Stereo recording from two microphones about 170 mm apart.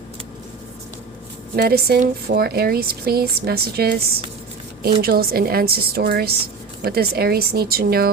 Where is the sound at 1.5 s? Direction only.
70° right (ahead or behind).